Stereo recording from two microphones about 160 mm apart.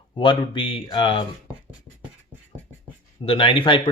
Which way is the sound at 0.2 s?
30° left (ahead or behind).